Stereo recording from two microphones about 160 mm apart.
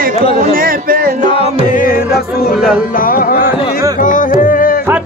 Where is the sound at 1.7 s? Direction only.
60° left (ahead or behind).